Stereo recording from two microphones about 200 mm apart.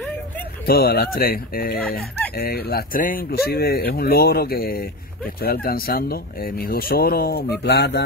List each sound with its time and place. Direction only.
0.7 s speech: 50° left (ahead or behind)